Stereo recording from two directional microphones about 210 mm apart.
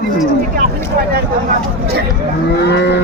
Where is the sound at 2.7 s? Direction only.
55° left (ahead or behind).